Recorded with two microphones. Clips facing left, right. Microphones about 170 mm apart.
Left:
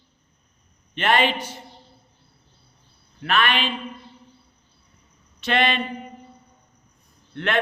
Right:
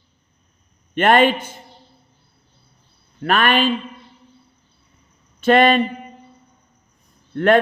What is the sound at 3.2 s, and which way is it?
Speech, 45° right (ahead or behind).